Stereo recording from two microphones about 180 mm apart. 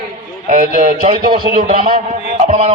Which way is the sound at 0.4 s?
45° right (ahead or behind).